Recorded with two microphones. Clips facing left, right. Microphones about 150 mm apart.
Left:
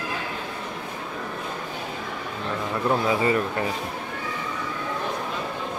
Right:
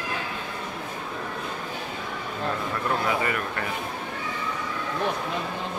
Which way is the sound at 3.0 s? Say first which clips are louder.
Left 4 dB; 25° left (ahead or behind).